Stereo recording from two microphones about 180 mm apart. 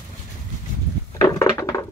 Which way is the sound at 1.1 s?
15° left (ahead or behind).